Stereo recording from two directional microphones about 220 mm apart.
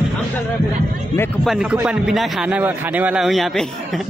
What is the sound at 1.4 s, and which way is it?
A man's voice, centre (ahead or behind).